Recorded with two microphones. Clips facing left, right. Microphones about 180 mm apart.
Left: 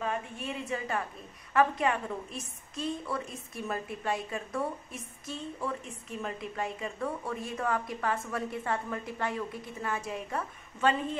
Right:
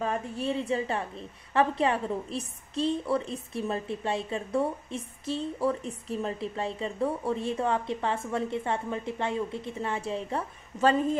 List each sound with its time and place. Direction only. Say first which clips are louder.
0.0 s a woman's voice: right 4 dB; 35° right (ahead or behind)